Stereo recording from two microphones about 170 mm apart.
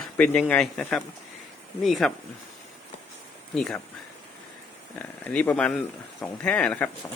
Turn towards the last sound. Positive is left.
turn(degrees=5)  # may be behind; listen again after turning